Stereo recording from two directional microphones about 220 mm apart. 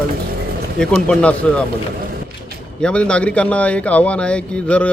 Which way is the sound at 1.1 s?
5° left (ahead or behind).